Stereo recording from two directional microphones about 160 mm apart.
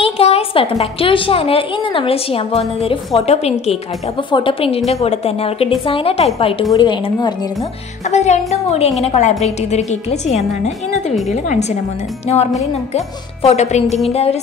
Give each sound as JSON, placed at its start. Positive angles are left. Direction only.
{"t": 0.0, "sound": "a woman's voice", "side_deg": 40}
{"t": 8.1, "sound": "a woman's voice", "side_deg": 45}
{"t": 12.9, "sound": "a woman's voice", "side_deg": 40}